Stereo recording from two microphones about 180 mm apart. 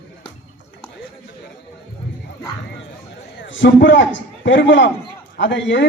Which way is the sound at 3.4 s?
80° left.